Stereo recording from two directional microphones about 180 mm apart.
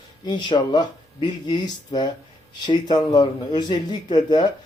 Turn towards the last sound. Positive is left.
turn(degrees=25)  # may be behind; listen again after turning